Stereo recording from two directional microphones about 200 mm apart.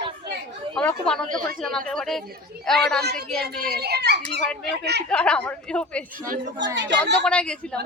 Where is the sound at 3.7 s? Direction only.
55° right (ahead or behind).